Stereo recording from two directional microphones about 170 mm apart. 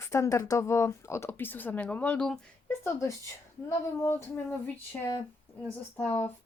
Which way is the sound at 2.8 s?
20° left (ahead or behind).